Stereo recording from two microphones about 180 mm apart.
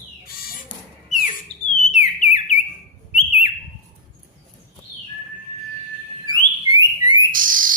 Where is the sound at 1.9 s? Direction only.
40° left (ahead or behind).